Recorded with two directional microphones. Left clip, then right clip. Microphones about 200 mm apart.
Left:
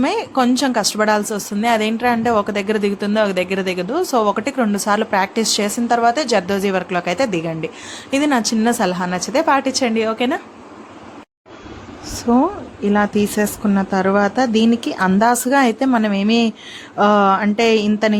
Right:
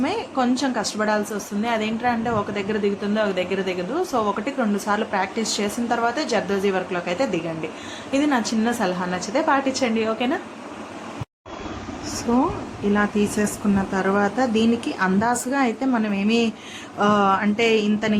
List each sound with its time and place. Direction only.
0.0 s speech: 50° left (ahead or behind)
12.9 s speech: 35° left (ahead or behind)